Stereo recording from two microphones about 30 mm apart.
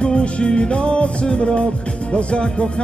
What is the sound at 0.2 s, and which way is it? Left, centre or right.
Music, left.